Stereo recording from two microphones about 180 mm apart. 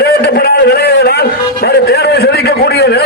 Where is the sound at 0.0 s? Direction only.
60° left (ahead or behind).